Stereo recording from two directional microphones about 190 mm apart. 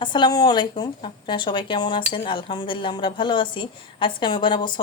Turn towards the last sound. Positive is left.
turn(degrees=25)  # may be behind; listen again after turning